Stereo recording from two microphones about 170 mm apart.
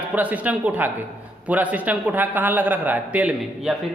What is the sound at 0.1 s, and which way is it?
A man's voice, 10° right (ahead or behind).